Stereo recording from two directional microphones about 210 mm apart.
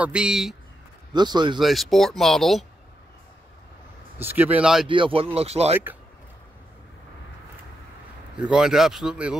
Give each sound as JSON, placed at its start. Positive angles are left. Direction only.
{"t": 0.0, "sound": "speech", "side_deg": -5}
{"t": 1.1, "sound": "speech", "side_deg": -20}
{"t": 1.6, "sound": "speech", "side_deg": 0}
{"t": 4.2, "sound": "speech", "side_deg": -10}
{"t": 4.8, "sound": "speech", "side_deg": -25}
{"t": 8.4, "sound": "speech", "side_deg": -5}